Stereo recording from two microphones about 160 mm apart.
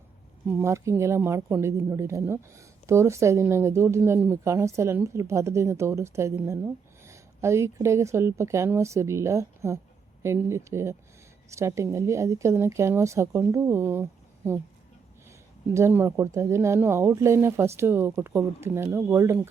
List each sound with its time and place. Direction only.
0.5 s speech: 15° right (ahead or behind)
15.7 s speech: 15° right (ahead or behind)